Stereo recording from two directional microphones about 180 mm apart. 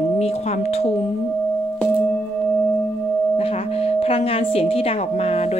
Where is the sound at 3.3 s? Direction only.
35° left (ahead or behind).